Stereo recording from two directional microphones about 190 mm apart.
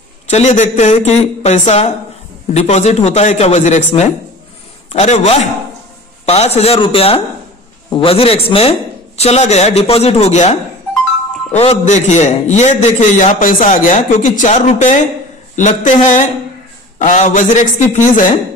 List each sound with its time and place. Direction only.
0.3 s a man's voice: 35° left (ahead or behind)